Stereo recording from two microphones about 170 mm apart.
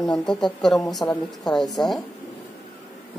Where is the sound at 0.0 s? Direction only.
Centre (ahead or behind).